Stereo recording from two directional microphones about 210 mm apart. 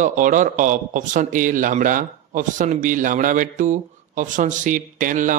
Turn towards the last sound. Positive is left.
turn(degrees=-40)  # may be behind; listen again after turning